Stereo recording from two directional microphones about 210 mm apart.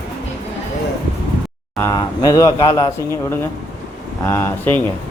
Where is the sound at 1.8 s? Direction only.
15° left (ahead or behind).